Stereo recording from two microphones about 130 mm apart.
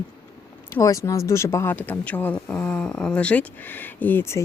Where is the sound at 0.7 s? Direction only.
25° left (ahead or behind).